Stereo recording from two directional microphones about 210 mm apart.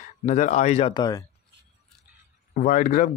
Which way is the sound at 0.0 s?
35° left (ahead or behind).